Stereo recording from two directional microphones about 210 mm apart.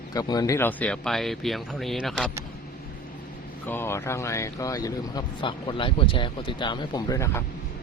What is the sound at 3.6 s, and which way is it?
Speech, 10° left (ahead or behind).